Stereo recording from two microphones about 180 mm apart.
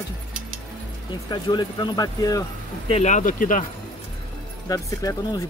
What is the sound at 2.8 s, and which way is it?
Speech, 40° left (ahead or behind).